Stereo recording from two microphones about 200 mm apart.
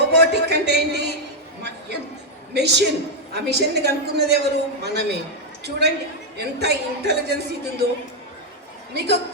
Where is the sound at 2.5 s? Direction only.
55° right (ahead or behind).